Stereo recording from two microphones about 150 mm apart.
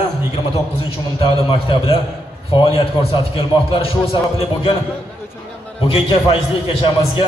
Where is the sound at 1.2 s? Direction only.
35° left (ahead or behind).